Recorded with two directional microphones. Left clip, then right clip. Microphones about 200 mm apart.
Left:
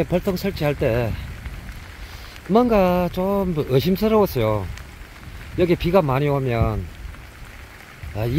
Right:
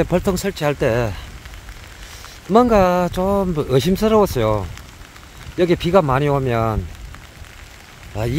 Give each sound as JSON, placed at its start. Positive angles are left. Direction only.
{"t": 0.0, "sound": "speech", "side_deg": -20}
{"t": 2.5, "sound": "speech", "side_deg": -10}
{"t": 8.1, "sound": "speech", "side_deg": -10}